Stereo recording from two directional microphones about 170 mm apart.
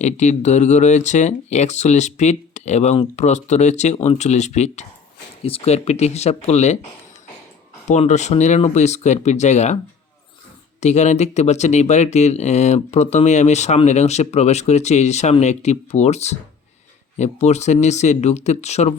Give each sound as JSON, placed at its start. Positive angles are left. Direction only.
{"t": 0.0, "sound": "speech", "side_deg": 45}
{"t": 7.9, "sound": "speech", "side_deg": 45}
{"t": 10.8, "sound": "speech", "side_deg": 40}